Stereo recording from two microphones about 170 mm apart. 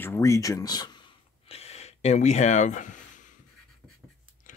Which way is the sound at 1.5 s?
40° left (ahead or behind).